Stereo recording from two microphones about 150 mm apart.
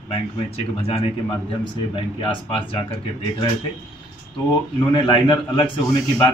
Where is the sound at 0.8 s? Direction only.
40° left (ahead or behind).